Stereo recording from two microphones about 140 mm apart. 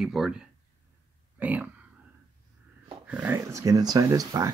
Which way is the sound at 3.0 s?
10° right (ahead or behind).